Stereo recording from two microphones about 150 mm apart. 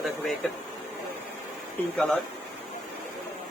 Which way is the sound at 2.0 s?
Centre (ahead or behind).